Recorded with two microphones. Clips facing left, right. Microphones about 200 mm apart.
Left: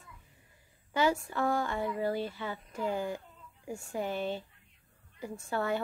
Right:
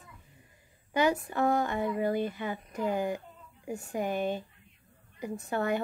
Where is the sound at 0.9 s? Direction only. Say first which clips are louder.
Right 2 dB; 20° right (ahead or behind).